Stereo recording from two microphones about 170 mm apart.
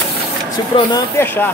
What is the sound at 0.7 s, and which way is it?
Speech, 30° left (ahead or behind).